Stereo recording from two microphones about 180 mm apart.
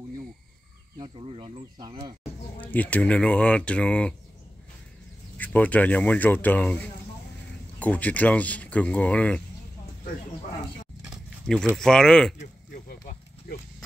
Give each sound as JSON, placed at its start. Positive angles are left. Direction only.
{"t": 0.9, "sound": "speech", "side_deg": -30}
{"t": 2.6, "sound": "speech", "side_deg": 10}
{"t": 5.4, "sound": "speech", "side_deg": 10}
{"t": 11.1, "sound": "a sound", "side_deg": 0}
{"t": 11.7, "sound": "speech", "side_deg": 5}
{"t": 12.4, "sound": "a sound", "side_deg": 50}